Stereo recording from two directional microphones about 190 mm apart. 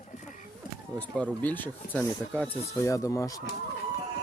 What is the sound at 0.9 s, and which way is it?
Speech, 5° left (ahead or behind).